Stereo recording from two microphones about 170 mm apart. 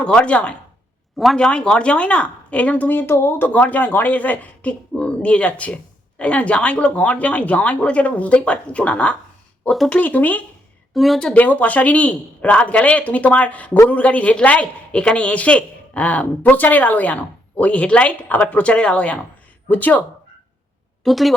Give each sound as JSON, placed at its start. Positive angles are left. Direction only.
{"t": 0.0, "sound": "speech", "side_deg": 5}
{"t": 21.0, "sound": "a woman's voice", "side_deg": 0}